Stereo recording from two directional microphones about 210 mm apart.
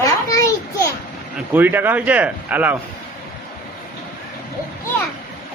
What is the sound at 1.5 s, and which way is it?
Speech, 10° right (ahead or behind).